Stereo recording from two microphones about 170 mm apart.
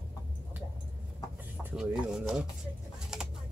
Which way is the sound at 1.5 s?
5° right (ahead or behind).